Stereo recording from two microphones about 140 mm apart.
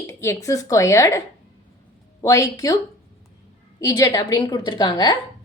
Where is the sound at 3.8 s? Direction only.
25° left (ahead or behind).